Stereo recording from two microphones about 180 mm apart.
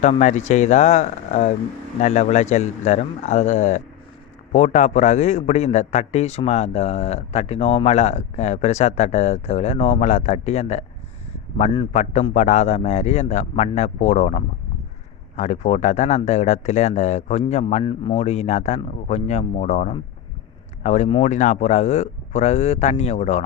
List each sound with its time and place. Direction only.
0.0 s a man's voice: 40° left (ahead or behind)